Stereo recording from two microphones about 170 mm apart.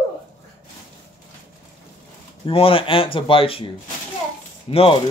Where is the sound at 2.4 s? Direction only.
30° left (ahead or behind).